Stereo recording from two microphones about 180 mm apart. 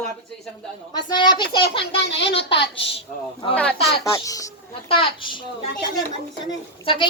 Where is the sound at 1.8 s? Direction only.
70° left (ahead or behind).